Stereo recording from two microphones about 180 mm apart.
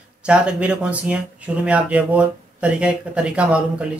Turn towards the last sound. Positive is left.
turn(degrees=-5)  # may be behind; listen again after turning